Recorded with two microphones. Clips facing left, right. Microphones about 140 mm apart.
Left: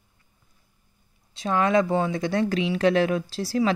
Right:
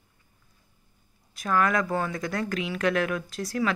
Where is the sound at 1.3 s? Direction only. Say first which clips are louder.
Left 4 dB; 25° left (ahead or behind).